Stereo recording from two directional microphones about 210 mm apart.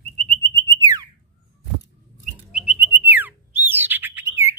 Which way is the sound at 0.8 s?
15° right (ahead or behind).